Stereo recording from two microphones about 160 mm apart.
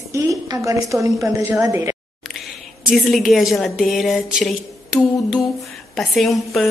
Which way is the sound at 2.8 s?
Centre (ahead or behind).